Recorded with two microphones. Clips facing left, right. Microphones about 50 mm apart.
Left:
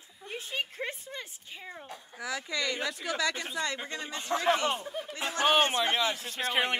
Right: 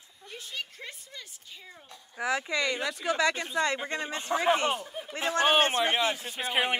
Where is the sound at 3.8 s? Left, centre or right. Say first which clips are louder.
Right 4 dB; right.